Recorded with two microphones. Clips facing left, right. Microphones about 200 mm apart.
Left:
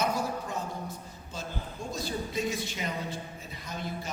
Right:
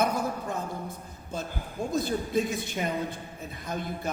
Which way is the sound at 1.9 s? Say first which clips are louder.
Right 6 dB; 55° right (ahead or behind).